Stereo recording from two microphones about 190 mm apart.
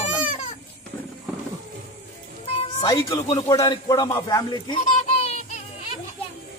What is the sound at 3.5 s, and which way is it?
Speech, 20° left (ahead or behind).